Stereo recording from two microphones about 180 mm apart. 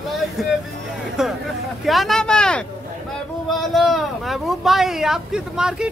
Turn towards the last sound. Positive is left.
turn(degrees=-5)  # may be behind; listen again after turning